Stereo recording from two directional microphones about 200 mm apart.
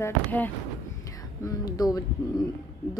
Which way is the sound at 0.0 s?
10° left (ahead or behind).